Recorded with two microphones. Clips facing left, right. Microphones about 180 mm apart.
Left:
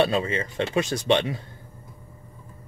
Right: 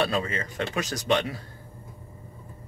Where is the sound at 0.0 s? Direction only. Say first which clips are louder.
Left 4 dB; 25° left (ahead or behind).